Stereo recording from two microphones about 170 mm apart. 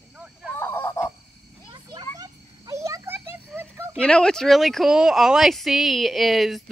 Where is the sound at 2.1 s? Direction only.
20° right (ahead or behind).